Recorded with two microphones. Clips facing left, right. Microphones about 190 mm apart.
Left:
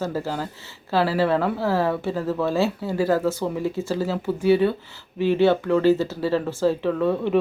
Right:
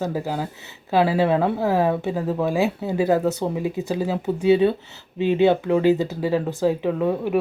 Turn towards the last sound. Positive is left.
turn(degrees=-10)  # may be behind; listen again after turning